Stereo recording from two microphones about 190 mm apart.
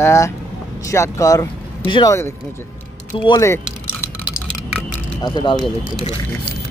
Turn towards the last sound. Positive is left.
turn(degrees=25)  # may be behind; listen again after turning